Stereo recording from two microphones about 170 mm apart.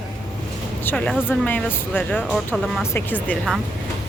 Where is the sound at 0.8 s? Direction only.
10° left (ahead or behind).